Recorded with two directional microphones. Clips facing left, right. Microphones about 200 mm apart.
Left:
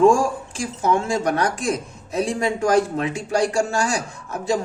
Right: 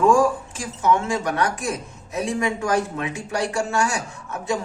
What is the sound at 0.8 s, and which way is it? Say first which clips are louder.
Speech: even; 30° left (ahead or behind).